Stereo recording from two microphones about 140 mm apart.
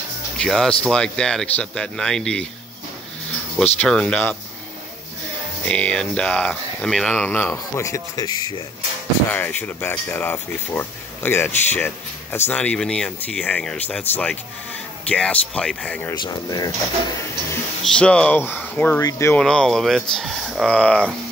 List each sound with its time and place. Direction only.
0.4 s a man's voice: 5° left (ahead or behind)
3.5 s speech: 5° left (ahead or behind)
5.7 s speech: 10° left (ahead or behind); by 8.5 s 30° left (ahead or behind)
9.3 s speech: 15° left (ahead or behind)
16.2 s speech: 30° left (ahead or behind)
17.8 s speech: 5° left (ahead or behind)
19.3 s a man's voice: 5° left (ahead or behind)
20.6 s speech: 10° left (ahead or behind)